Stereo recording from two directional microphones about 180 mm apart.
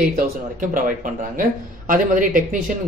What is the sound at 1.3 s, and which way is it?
Speech, 50° right (ahead or behind).